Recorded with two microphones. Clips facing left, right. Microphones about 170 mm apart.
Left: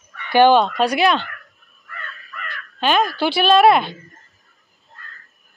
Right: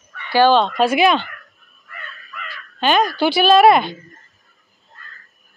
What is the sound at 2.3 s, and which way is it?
Speech, centre (ahead or behind).